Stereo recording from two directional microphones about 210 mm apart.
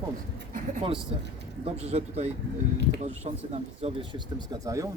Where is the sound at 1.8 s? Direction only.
30° right (ahead or behind).